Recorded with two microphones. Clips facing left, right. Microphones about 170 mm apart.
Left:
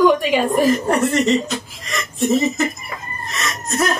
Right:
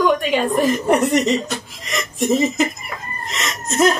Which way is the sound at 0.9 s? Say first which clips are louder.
Right 1 dB; 20° right (ahead or behind).